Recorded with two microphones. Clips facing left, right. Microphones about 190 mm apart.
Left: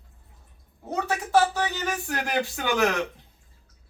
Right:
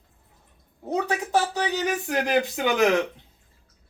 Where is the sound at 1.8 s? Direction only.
20° right (ahead or behind).